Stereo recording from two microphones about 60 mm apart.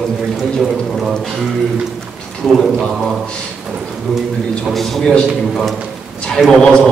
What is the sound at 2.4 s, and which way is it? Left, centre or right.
Speech, centre.